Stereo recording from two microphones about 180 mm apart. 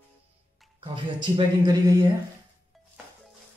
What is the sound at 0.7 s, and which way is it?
Speech, 25° right (ahead or behind).